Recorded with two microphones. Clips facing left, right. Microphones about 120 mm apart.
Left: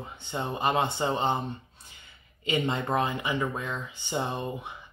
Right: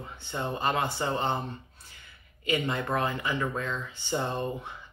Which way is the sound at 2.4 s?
25° left (ahead or behind).